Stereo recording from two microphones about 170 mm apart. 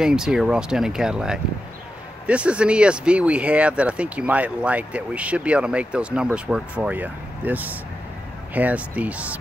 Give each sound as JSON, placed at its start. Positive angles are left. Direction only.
{"t": 0.0, "sound": "speech", "side_deg": -5}